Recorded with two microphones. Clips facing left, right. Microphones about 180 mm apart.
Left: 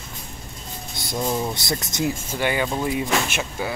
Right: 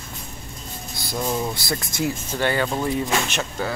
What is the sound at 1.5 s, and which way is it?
Speech, 25° left (ahead or behind).